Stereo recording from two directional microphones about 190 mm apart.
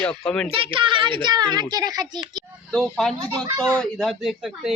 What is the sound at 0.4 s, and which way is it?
A child's voice, 30° right (ahead or behind).